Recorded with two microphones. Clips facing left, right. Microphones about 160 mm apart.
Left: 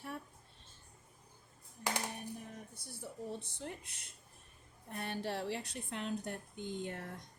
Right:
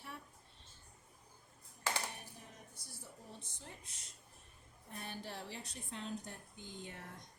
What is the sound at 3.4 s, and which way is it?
Speech, 70° left (ahead or behind).